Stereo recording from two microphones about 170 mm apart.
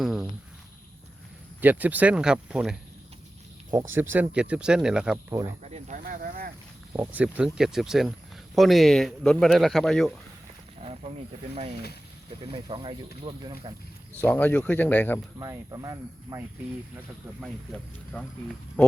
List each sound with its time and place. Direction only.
0.0 s a sound: centre (ahead or behind)
1.6 s speech: 10° right (ahead or behind)
3.7 s speech: 15° right (ahead or behind)
5.3 s speech: 20° right (ahead or behind)
5.6 s speech: 45° right (ahead or behind)
6.9 s speech: 10° right (ahead or behind)
10.8 s a sound: 40° right (ahead or behind)
12.4 s speech: 30° right (ahead or behind)
14.2 s speech: 10° left (ahead or behind)
15.4 s speech: 20° right (ahead or behind)
18.1 s speech: 5° left (ahead or behind)